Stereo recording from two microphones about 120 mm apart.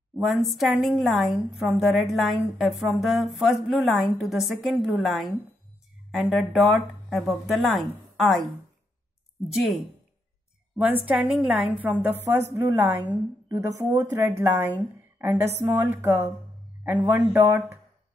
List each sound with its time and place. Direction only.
0.1 s a woman's voice: centre (ahead or behind)
9.5 s a woman's voice: centre (ahead or behind); by 14.7 s 20° right (ahead or behind)
15.1 s a sound: 15° right (ahead or behind)
15.6 s a woman's voice: 20° right (ahead or behind)